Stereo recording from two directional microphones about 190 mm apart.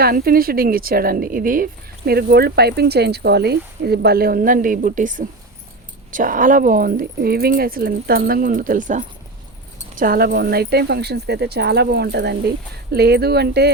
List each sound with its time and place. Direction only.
0.0 s speech: 50° right (ahead or behind)